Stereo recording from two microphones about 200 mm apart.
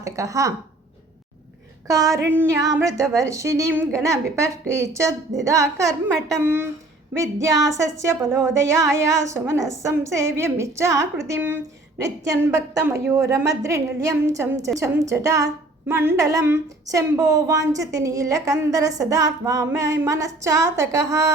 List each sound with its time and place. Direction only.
0.0 s a woman's voice: 15° right (ahead or behind)
1.9 s a woman's voice: 15° right (ahead or behind)